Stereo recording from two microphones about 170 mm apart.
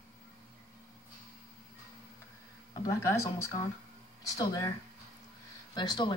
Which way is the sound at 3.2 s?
20° left (ahead or behind).